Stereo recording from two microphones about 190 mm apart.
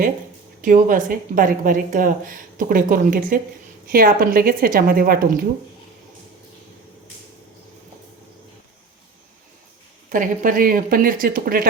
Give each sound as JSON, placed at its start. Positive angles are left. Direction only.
{"t": 0.6, "sound": "a woman's voice", "side_deg": -45}
{"t": 10.1, "sound": "a woman's voice", "side_deg": -45}